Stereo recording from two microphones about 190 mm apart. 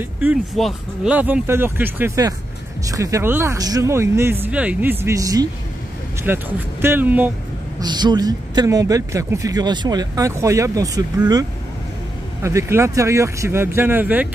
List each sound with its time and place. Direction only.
0.0 s speech: 10° right (ahead or behind)
7.8 s speech: 20° right (ahead or behind)